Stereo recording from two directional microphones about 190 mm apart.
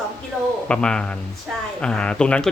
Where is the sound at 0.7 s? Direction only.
5° left (ahead or behind).